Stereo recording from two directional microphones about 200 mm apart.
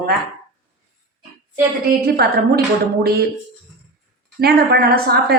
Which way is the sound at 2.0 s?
50° right (ahead or behind).